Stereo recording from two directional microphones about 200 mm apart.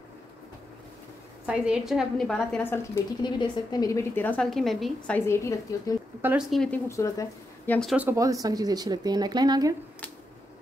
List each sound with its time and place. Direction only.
1.4 s a woman's voice: 5° right (ahead or behind)
3.2 s a woman's voice: 20° left (ahead or behind)
6.2 s a woman's voice: centre (ahead or behind)
6.9 s speech: 15° left (ahead or behind)
7.9 s speech: 10° right (ahead or behind)